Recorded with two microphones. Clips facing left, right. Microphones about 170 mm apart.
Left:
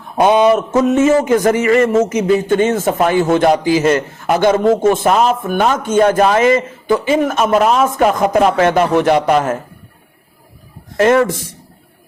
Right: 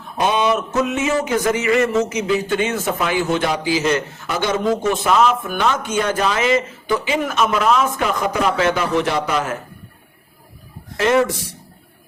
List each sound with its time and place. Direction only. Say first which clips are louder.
0.2 s a man's voice: left 7 dB; 55° left (ahead or behind)
10.9 s a man's voice: left 5 dB; 50° left (ahead or behind)